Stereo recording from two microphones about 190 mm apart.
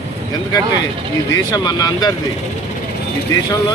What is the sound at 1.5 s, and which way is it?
Speech, 20° left (ahead or behind).